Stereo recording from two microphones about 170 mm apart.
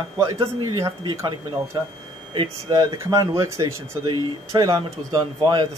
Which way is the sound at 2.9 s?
20° right (ahead or behind).